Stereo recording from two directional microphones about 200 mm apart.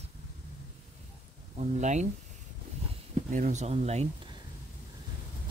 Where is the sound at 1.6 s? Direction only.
35° right (ahead or behind).